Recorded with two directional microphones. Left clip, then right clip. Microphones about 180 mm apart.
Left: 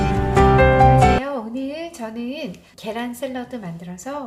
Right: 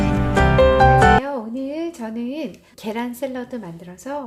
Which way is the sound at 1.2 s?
25° right (ahead or behind).